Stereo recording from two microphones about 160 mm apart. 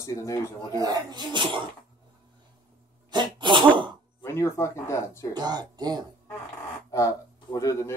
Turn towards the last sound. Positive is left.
turn(degrees=20)  # may be behind; listen again after turning